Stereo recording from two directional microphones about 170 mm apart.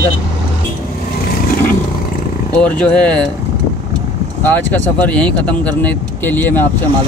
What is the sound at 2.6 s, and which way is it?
Speech, 5° left (ahead or behind).